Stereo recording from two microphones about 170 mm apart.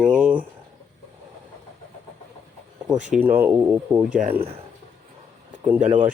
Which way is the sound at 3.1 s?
10° right (ahead or behind).